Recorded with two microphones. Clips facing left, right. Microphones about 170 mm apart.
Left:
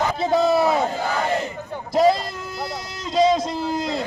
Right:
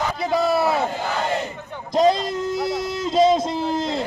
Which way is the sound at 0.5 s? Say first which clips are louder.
Left 2 dB; 20° left (ahead or behind).